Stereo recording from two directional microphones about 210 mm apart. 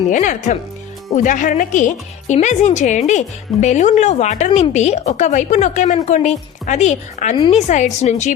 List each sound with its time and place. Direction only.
0.1 s speech: 35° left (ahead or behind)